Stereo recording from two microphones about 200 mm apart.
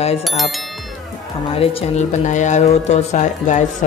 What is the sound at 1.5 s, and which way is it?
Speech, 30° left (ahead or behind).